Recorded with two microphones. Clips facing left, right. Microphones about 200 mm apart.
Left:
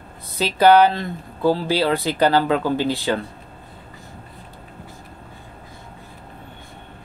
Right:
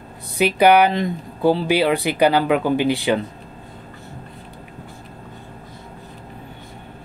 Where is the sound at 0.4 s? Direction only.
15° right (ahead or behind).